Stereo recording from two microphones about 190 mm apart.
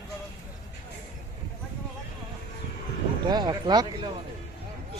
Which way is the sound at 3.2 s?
20° right (ahead or behind).